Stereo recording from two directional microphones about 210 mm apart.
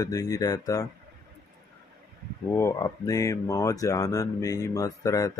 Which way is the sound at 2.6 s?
15° left (ahead or behind).